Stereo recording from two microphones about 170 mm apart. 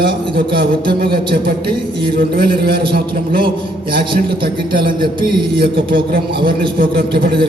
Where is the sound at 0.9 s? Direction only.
60° right (ahead or behind).